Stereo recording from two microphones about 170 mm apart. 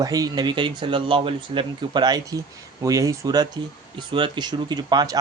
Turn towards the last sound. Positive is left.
turn(degrees=-25)  # may be behind; listen again after turning